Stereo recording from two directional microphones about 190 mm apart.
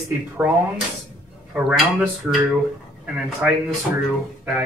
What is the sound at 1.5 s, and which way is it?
Speech, 5° right (ahead or behind).